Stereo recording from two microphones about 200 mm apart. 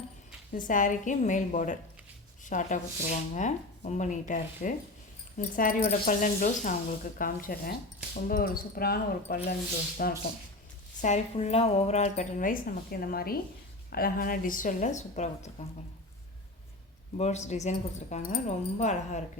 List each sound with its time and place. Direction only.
0.5 s speech: 40° left (ahead or behind)
11.0 s speech: 35° left (ahead or behind)
17.2 s speech: 35° left (ahead or behind)